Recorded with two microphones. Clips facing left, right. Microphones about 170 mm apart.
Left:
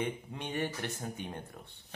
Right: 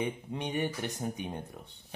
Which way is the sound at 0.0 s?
15° right (ahead or behind).